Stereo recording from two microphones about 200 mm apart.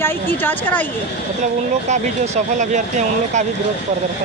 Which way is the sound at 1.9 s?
35° right (ahead or behind).